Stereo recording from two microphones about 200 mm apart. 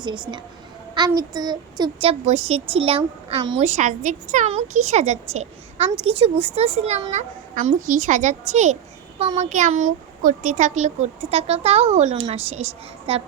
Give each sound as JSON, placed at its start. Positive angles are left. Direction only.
{"t": 0.0, "sound": "a woman's voice", "side_deg": -25}